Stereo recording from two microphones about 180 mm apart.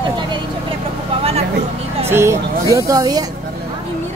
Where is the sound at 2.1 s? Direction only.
15° right (ahead or behind).